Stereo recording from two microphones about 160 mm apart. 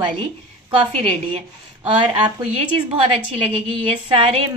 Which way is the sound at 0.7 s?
35° right (ahead or behind).